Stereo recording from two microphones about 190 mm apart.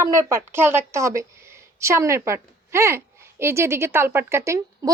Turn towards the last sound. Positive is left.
turn(degrees=-15)  # may be behind; listen again after turning